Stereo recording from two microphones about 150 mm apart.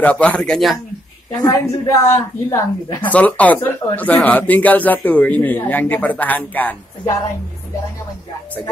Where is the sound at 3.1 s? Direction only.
10° left (ahead or behind).